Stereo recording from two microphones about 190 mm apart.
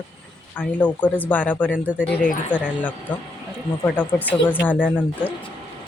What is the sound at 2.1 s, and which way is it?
Speech, 50° left (ahead or behind).